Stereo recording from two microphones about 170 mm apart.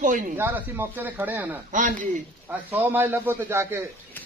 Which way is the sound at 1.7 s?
50° right (ahead or behind).